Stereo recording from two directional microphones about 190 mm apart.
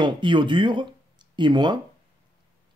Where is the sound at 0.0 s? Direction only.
25° right (ahead or behind).